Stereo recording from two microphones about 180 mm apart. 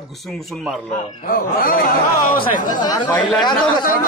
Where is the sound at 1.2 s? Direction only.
55° left (ahead or behind).